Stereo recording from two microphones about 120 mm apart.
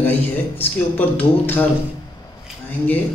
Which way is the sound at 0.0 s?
15° left (ahead or behind).